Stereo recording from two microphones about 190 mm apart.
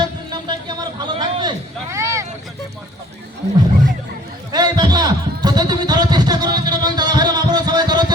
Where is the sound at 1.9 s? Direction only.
15° right (ahead or behind).